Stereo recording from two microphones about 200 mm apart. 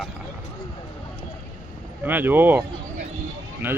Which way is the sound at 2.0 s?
10° right (ahead or behind).